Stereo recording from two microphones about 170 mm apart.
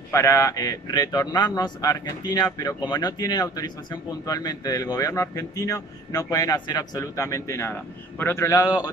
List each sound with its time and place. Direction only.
0.1 s a man's voice: 15° left (ahead or behind)